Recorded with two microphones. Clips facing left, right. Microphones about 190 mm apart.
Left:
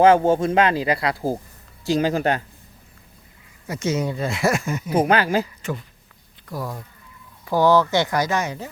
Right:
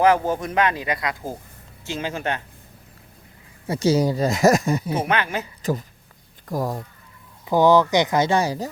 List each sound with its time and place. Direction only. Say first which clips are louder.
0.0 s speech: left 4 dB; 25° left (ahead or behind)
3.7 s speech: right 5 dB; 35° right (ahead or behind)
4.9 s speech: left 5 dB; 35° left (ahead or behind)
6.4 s speech: right 5 dB; 45° right (ahead or behind)
7.4 s speech: right 1 dB; 20° right (ahead or behind); by 8.7 s 35° right (ahead or behind)